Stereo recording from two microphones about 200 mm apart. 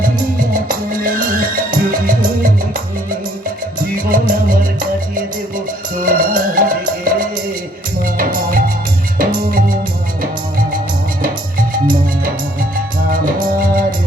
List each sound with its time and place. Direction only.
0.7 s music: 45° right (ahead or behind)
4.1 s music: 45° right (ahead or behind)
6.0 s music: 45° right (ahead or behind)